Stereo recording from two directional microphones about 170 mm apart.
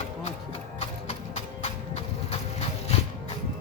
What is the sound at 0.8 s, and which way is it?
Clip-clop, 40° left (ahead or behind).